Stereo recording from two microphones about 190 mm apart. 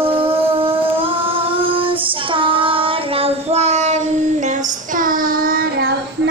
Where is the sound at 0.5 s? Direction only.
30° right (ahead or behind).